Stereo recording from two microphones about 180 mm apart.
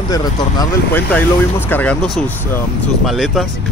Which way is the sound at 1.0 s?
10° left (ahead or behind).